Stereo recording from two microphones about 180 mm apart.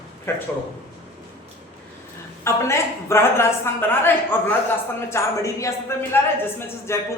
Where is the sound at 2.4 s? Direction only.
15° left (ahead or behind).